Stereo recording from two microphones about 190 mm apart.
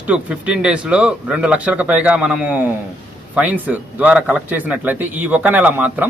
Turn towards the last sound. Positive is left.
turn(degrees=-10)  # may be behind; listen again after turning